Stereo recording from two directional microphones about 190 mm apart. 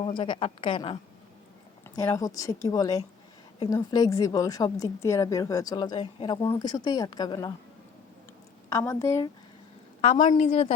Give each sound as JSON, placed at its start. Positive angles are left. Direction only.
{"t": 0.0, "sound": "a woman's voice", "side_deg": 25}
{"t": 2.0, "sound": "a woman's voice", "side_deg": 15}
{"t": 8.7, "sound": "a woman's voice", "side_deg": 15}
{"t": 10.0, "sound": "a woman's voice", "side_deg": 35}